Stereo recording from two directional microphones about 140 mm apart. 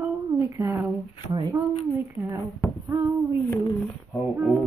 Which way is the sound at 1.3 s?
30° right (ahead or behind).